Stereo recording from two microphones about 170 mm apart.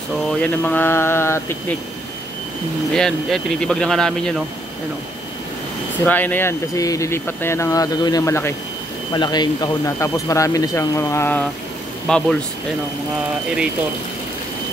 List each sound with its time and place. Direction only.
0.3 s speech: 5° left (ahead or behind)
2.9 s speech: 5° left (ahead or behind)
6.0 s speech: 10° left (ahead or behind)